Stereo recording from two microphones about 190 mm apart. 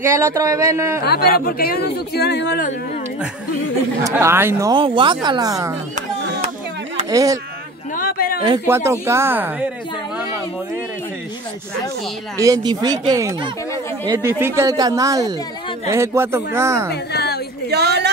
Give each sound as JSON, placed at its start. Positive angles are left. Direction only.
{"t": 0.0, "sound": "speech", "side_deg": -15}
{"t": 1.0, "sound": "speech", "side_deg": 55}
{"t": 4.0, "sound": "speech", "side_deg": -15}
{"t": 7.1, "sound": "speech", "side_deg": -20}
{"t": 7.9, "sound": "a sound", "side_deg": 50}
{"t": 8.6, "sound": "speech", "side_deg": -15}
{"t": 12.4, "sound": "speech", "side_deg": -15}
{"t": 16.9, "sound": "a sound", "side_deg": 60}
{"t": 17.6, "sound": "a sound", "side_deg": -60}